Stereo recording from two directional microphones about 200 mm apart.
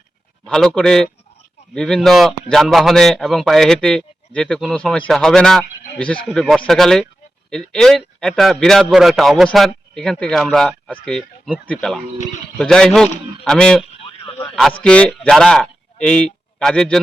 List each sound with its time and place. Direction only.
0.4 s a man's voice: centre (ahead or behind)
14.3 s a sound: 20° left (ahead or behind)
14.8 s speech: 5° left (ahead or behind)